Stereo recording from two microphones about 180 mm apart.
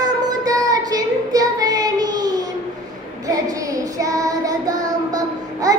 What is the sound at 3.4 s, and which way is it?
Child singing, 20° right (ahead or behind).